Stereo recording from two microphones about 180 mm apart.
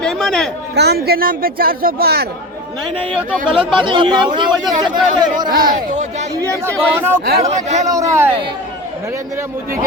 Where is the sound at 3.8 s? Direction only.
25° right (ahead or behind).